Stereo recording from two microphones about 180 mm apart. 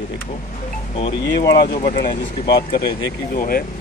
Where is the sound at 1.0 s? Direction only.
30° left (ahead or behind).